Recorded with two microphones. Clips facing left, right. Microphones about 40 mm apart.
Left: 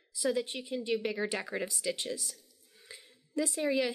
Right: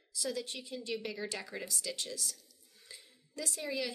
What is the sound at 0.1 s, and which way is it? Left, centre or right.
Speech, left.